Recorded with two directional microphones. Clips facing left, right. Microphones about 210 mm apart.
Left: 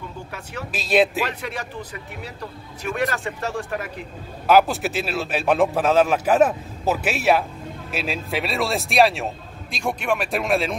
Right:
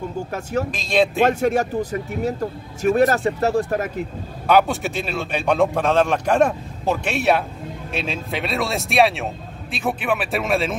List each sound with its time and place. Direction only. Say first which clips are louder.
0.3 s speech: right 12 dB; 45° right (ahead or behind)
0.7 s a man's voice: left 3 dB; 5° left (ahead or behind)
1.2 s speech: right 11 dB; 45° right (ahead or behind)
4.5 s a man's voice: even; centre (ahead or behind)